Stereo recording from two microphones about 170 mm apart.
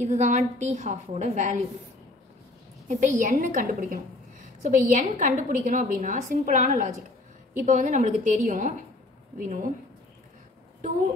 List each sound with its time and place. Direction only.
0.0 s a woman's voice: 40° right (ahead or behind)
2.9 s a woman's voice: 45° right (ahead or behind)